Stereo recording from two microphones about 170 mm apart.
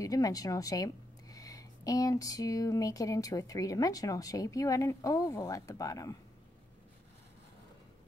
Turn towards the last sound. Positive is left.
turn(degrees=20)  # may be behind; listen again after turning